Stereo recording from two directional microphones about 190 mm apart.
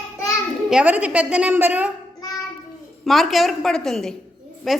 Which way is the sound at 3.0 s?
Centre (ahead or behind).